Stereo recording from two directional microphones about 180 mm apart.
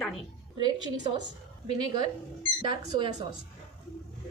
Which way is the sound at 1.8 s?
25° right (ahead or behind).